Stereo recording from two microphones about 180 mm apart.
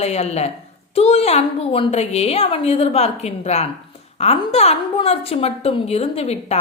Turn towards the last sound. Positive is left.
turn(degrees=35)  # may be behind; listen again after turning